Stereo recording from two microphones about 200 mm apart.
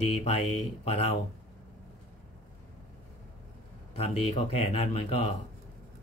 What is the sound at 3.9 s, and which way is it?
Speech, 30° left (ahead or behind).